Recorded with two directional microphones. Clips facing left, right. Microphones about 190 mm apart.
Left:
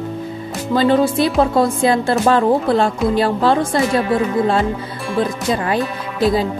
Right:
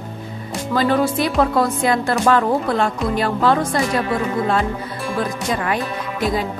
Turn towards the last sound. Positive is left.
turn(degrees=30)  # may be behind; listen again after turning